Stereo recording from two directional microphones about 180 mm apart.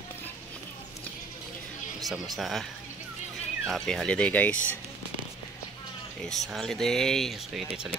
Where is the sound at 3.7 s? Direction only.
5° left (ahead or behind).